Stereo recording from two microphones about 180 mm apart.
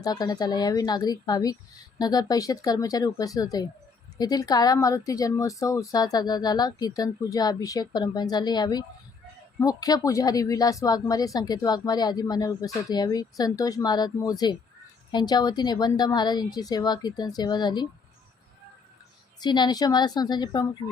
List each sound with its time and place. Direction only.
0.0 s speech: 20° left (ahead or behind)
19.4 s speech: 25° left (ahead or behind)